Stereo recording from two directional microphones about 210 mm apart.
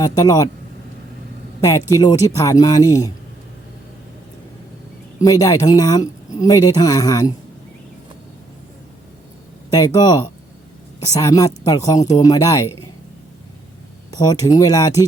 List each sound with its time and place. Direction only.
0.0 s speech: 20° left (ahead or behind)
2.0 s speech: 20° left (ahead or behind)
5.2 s speech: 15° left (ahead or behind)
9.7 s speech: 20° left (ahead or behind)
14.1 s speech: 20° left (ahead or behind)